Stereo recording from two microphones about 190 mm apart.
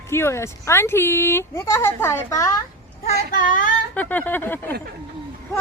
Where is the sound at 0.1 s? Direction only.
15° left (ahead or behind).